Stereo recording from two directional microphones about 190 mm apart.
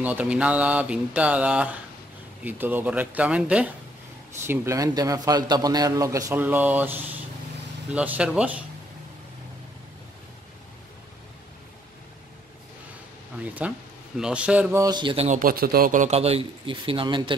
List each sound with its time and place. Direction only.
0.0 s a man's voice: 10° right (ahead or behind)
4.5 s a man's voice: 15° right (ahead or behind)
13.4 s a man's voice: 5° right (ahead or behind); by 15.2 s 25° right (ahead or behind)
15.2 s a man's voice: 45° right (ahead or behind); by 17.2 s 25° right (ahead or behind)